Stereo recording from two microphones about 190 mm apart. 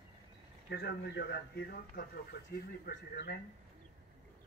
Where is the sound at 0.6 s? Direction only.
60° left (ahead or behind).